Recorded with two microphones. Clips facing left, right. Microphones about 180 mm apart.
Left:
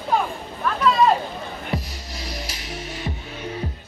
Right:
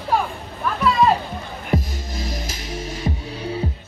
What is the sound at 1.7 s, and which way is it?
Music, 45° right (ahead or behind).